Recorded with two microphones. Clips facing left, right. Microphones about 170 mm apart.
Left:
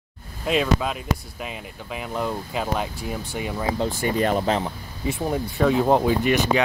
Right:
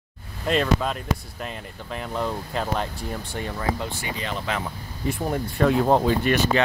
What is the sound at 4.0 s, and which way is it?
Speech, 50° left (ahead or behind).